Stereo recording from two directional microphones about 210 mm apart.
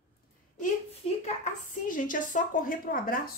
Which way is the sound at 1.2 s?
35° left (ahead or behind).